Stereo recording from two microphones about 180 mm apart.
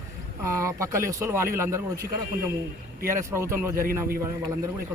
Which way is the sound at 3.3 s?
15° right (ahead or behind).